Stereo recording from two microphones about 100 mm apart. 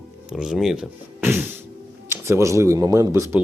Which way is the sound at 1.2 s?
20° right (ahead or behind).